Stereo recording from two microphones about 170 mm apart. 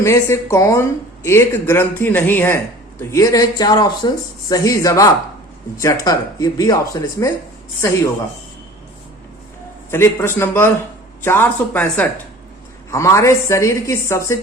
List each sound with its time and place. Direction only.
0.0 s a woman's voice: 15° left (ahead or behind)
9.9 s a woman's voice: 15° left (ahead or behind)